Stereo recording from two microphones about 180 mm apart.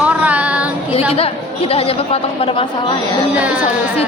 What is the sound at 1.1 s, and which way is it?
Speech, 30° left (ahead or behind).